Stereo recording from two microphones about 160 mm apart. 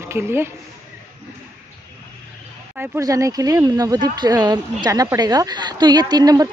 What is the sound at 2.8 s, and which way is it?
Speech, 20° right (ahead or behind).